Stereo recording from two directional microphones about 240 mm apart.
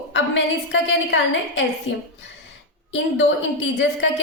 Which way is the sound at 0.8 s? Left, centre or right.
Left.